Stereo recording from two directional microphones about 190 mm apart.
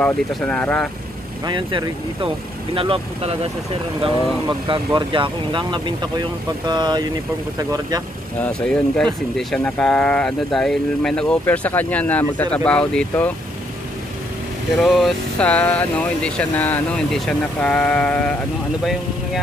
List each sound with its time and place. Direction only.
0.0 s speech: 5° left (ahead or behind)
1.4 s speech: 25° right (ahead or behind)
8.4 s speech: 5° left (ahead or behind)
14.8 s speech: centre (ahead or behind)